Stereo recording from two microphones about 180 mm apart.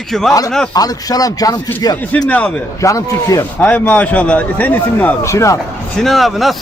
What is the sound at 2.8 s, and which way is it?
Speech, 20° left (ahead or behind).